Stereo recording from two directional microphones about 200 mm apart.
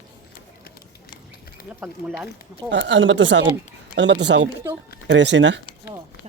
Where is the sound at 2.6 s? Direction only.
65° right (ahead or behind).